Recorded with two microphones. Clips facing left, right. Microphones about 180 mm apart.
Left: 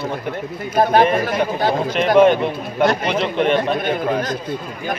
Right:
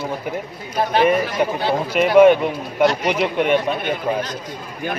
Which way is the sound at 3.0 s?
10° right (ahead or behind).